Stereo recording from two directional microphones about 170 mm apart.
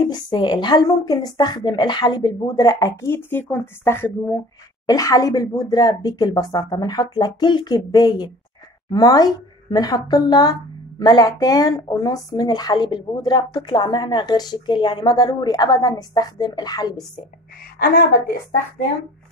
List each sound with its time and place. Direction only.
0.1 s a woman's voice: 25° left (ahead or behind)
17.7 s a woman's voice: 65° left (ahead or behind)